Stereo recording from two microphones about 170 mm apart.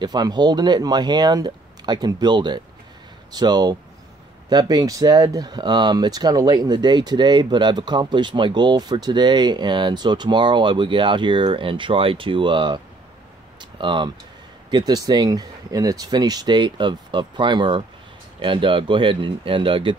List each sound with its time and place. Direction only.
0.0 s speech: 25° right (ahead or behind)
13.6 s a sound: 30° right (ahead or behind)
14.7 s speech: 25° right (ahead or behind)